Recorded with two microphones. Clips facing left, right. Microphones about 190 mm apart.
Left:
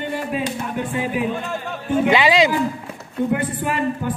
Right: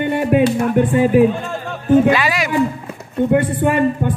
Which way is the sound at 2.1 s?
20° left (ahead or behind).